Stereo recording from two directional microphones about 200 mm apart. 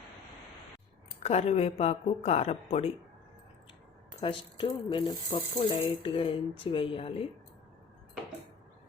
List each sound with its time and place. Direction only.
1.2 s speech: 35° left (ahead or behind)
4.2 s speech: 25° left (ahead or behind)